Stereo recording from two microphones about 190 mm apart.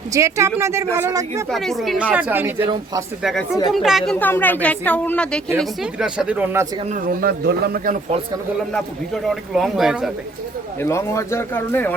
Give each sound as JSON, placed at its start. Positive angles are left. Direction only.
{"t": 0.1, "sound": "speech", "side_deg": -15}
{"t": 1.5, "sound": "a man's voice", "side_deg": 0}
{"t": 6.9, "sound": "a man's voice", "side_deg": -50}
{"t": 8.7, "sound": "a man's voice", "side_deg": 0}
{"t": 10.8, "sound": "a woman's voice", "side_deg": 15}